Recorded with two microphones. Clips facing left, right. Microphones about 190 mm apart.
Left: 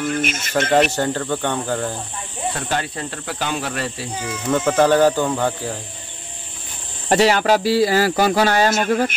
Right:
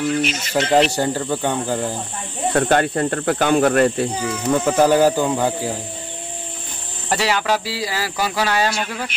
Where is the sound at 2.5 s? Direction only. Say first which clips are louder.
Right 11 dB; 55° right (ahead or behind).